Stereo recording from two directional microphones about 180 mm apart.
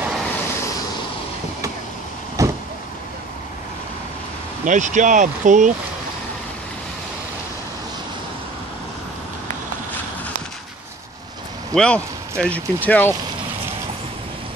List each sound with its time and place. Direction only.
2.4 s vehicle: 15° right (ahead or behind)
4.6 s speech: 45° right (ahead or behind)
11.7 s speech: 5° left (ahead or behind)